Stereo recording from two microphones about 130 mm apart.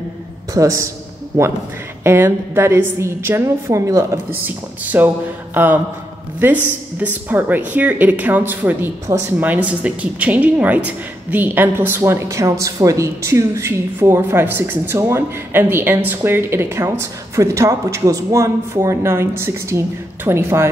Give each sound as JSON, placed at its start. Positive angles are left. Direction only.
{"t": 0.6, "sound": "a woman's voice", "side_deg": -20}